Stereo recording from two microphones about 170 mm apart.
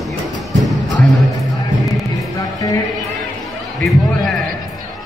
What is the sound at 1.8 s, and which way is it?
Music, centre (ahead or behind).